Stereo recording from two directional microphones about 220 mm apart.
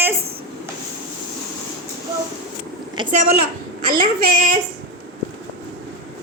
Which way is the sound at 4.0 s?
40° right (ahead or behind).